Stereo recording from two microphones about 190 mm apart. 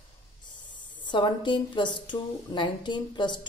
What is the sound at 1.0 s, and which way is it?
A woman's voice, 25° left (ahead or behind).